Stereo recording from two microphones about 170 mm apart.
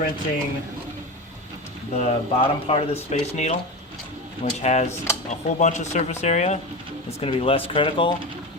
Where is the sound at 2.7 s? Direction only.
40° left (ahead or behind).